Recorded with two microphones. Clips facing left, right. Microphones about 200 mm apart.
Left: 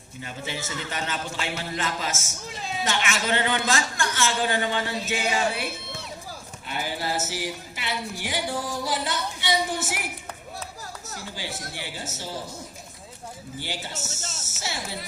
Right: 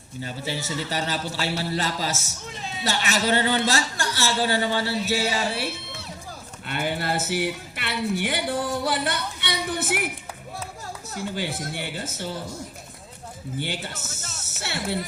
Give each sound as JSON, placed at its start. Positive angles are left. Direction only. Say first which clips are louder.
{"t": 0.2, "sound": "a man's voice", "louder": "right 3 dB", "side_deg": -35}
{"t": 6.7, "sound": "speech", "louder": "right 3 dB", "side_deg": -60}
{"t": 11.1, "sound": "speech", "louder": "right 8 dB", "side_deg": -55}
{"t": 13.6, "sound": "speech", "louder": "right 3 dB", "side_deg": -60}